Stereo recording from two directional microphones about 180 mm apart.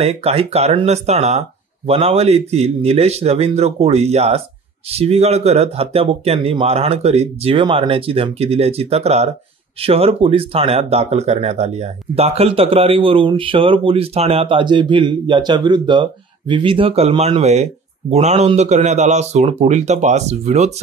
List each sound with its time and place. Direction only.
0.0 s speech: 35° right (ahead or behind)